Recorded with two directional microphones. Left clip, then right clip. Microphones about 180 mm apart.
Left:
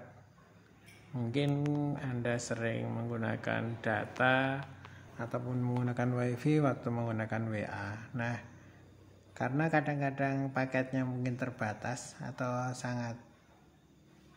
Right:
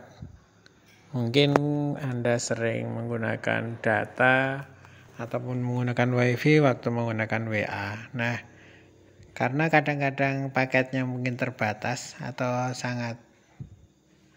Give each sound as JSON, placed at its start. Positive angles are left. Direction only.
{"t": 1.1, "sound": "speech", "side_deg": -35}